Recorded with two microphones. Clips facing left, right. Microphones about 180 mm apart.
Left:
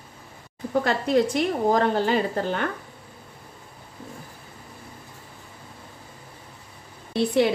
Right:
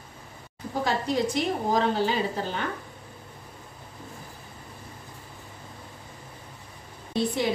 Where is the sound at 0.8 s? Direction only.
60° left (ahead or behind).